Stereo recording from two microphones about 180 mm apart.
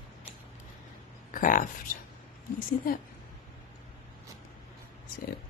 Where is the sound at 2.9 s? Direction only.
50° left (ahead or behind).